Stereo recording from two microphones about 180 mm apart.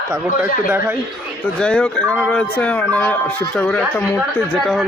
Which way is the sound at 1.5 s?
5° left (ahead or behind).